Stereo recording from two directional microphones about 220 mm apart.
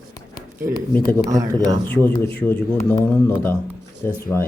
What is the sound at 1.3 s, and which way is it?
Speech, 15° right (ahead or behind).